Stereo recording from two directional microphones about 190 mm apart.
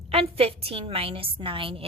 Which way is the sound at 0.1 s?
30° right (ahead or behind).